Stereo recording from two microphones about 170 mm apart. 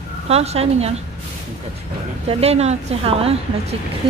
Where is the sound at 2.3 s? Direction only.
35° right (ahead or behind).